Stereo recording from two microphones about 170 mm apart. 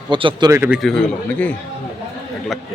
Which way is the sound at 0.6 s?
Centre (ahead or behind).